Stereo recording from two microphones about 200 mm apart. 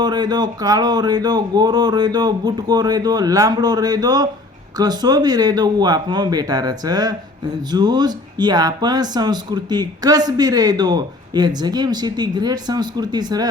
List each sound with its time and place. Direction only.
0.0 s speech: 20° right (ahead or behind)